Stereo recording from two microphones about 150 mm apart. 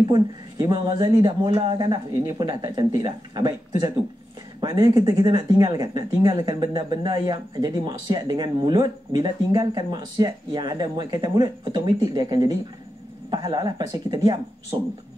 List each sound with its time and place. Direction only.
0.1 s speech: 30° right (ahead or behind)